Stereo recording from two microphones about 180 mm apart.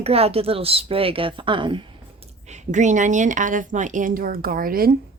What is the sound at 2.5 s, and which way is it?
A woman's voice, 40° right (ahead or behind).